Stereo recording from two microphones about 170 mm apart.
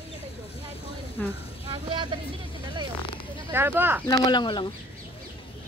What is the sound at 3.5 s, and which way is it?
Speech, 15° right (ahead or behind).